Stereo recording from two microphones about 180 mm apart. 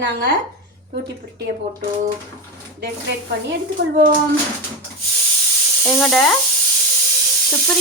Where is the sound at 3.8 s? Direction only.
75° right (ahead or behind).